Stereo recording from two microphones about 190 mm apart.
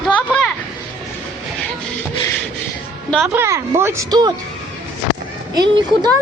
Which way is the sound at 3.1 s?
5° right (ahead or behind).